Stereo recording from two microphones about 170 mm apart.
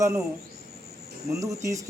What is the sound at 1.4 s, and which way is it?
Speech, 20° right (ahead or behind).